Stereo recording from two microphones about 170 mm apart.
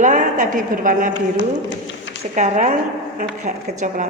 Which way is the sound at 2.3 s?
45° right (ahead or behind).